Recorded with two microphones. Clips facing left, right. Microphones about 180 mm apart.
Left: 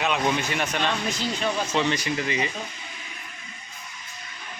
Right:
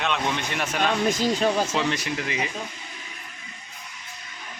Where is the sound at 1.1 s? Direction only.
45° right (ahead or behind).